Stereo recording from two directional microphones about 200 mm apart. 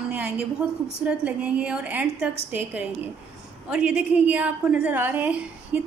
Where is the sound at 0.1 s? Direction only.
5° right (ahead or behind).